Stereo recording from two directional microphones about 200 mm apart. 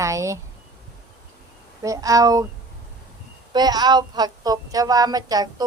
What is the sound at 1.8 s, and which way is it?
Speech, 15° right (ahead or behind).